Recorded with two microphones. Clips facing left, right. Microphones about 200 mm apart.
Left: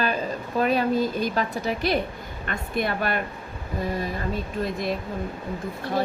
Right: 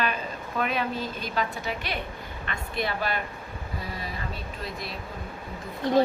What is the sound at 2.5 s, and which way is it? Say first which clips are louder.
Speech: left 4 dB; 50° left (ahead or behind).